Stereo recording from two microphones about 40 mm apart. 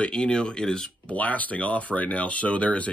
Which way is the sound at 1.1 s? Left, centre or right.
Left.